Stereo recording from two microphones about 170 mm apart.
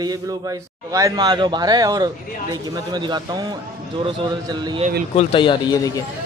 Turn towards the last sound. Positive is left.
turn(degrees=20)  # may be behind; listen again after turning